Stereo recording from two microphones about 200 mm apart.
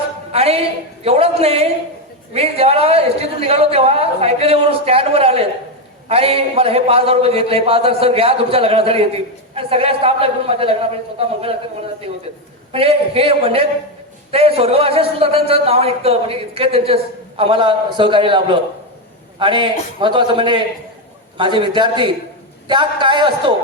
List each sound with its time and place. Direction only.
0.3 s a sound: 30° right (ahead or behind)
1.0 s a man's voice: 30° right (ahead or behind)
12.7 s a man's voice: 30° right (ahead or behind)